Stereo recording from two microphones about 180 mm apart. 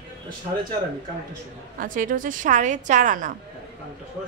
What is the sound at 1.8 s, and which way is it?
A woman's voice, 50° right (ahead or behind).